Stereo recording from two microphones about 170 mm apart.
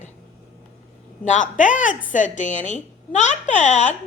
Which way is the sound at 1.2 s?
50° left (ahead or behind).